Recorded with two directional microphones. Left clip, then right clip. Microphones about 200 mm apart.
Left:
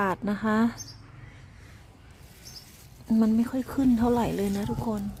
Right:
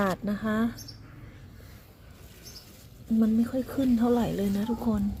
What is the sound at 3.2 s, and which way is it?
Speech, 15° left (ahead or behind).